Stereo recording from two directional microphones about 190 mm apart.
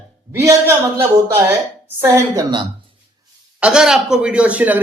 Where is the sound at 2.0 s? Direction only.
15° right (ahead or behind).